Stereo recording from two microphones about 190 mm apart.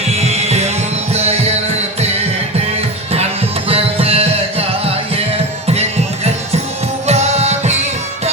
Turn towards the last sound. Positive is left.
turn(degrees=-35)  # may be behind; listen again after turning